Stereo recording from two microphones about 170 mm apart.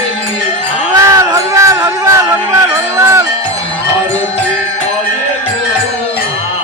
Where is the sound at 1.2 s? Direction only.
20° right (ahead or behind).